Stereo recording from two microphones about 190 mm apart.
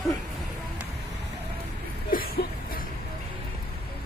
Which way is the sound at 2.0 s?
50° left (ahead or behind).